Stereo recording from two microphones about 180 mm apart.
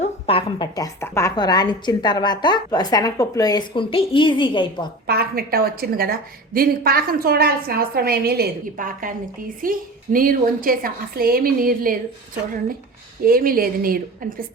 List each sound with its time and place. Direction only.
0.0 s a sound: 30° left (ahead or behind)
0.8 s a woman's voice: 15° left (ahead or behind)
5.0 s a woman's voice: 60° right (ahead or behind)
13.2 s a woman's voice: 55° right (ahead or behind)